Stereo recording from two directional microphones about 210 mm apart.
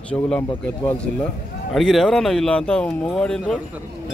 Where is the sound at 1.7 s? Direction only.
Centre (ahead or behind).